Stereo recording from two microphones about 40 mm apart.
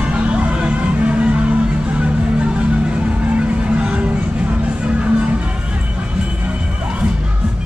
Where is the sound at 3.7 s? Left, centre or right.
Right.